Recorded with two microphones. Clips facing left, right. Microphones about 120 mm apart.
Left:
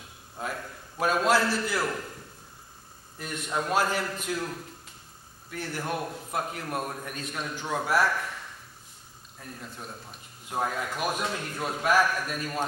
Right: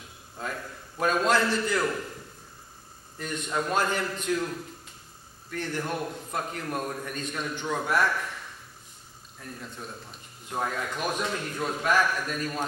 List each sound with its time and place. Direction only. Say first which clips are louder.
0.4 s a man's voice: even; 5° left (ahead or behind)
3.2 s a man's voice: right 1 dB; 5° left (ahead or behind)
9.4 s a man's voice: right 1 dB; 5° left (ahead or behind)